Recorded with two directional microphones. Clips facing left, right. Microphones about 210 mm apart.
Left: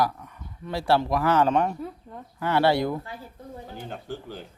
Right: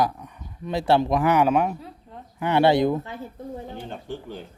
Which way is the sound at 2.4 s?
20° right (ahead or behind).